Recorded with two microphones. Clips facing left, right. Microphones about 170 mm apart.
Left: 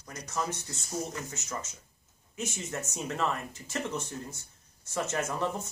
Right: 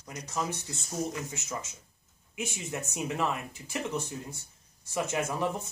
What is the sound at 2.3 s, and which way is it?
Speech, 15° right (ahead or behind).